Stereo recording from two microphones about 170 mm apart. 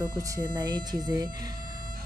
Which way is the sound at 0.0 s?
20° right (ahead or behind).